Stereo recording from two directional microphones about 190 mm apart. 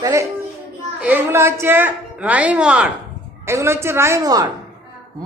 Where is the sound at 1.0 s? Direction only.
10° right (ahead or behind).